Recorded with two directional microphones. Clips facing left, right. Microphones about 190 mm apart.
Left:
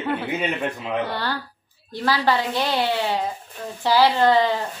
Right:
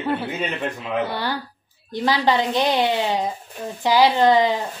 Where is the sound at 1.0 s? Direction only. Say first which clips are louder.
Right 1 dB; 10° right (ahead or behind).